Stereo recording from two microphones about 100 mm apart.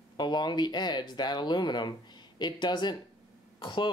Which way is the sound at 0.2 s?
45° left (ahead or behind).